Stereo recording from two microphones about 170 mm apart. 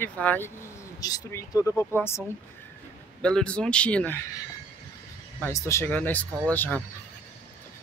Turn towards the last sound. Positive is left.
turn(degrees=10)  # may be behind; listen again after turning